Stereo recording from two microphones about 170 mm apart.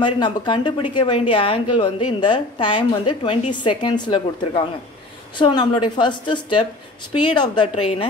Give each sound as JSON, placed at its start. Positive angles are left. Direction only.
{"t": 0.0, "sound": "a woman's voice", "side_deg": 25}